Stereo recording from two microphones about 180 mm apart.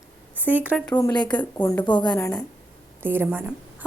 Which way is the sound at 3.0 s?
10° right (ahead or behind).